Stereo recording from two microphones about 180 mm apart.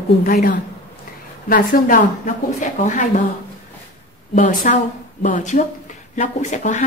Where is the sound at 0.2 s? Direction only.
50° left (ahead or behind).